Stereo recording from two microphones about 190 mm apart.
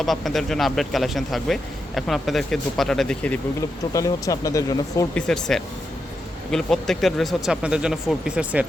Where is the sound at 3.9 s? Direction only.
15° left (ahead or behind).